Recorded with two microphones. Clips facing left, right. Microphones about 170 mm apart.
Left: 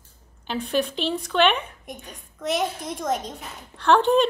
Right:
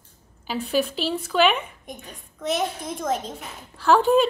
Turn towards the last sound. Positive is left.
turn(degrees=-5)  # may be behind; listen again after turning